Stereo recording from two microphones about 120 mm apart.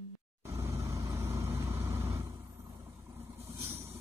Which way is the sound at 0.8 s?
25° right (ahead or behind).